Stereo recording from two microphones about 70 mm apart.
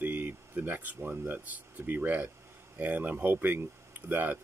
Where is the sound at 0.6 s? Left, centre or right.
Right.